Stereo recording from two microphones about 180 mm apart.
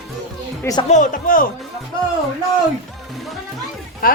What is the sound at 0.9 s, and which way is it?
Speech, 45° left (ahead or behind).